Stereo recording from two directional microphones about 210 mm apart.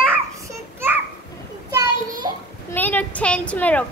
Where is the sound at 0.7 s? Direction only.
10° right (ahead or behind).